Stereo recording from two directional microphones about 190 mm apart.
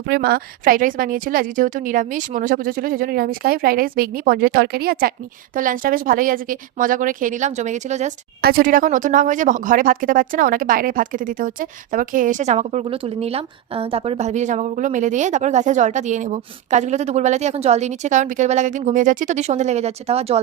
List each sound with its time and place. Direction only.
0.1 s a woman's voice: 55° right (ahead or behind); by 8.1 s 40° right (ahead or behind)
8.4 s speech: 50° right (ahead or behind); by 20.4 s 30° right (ahead or behind)